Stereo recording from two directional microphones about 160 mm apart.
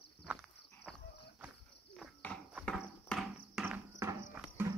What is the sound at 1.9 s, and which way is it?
Cricket, 5° left (ahead or behind).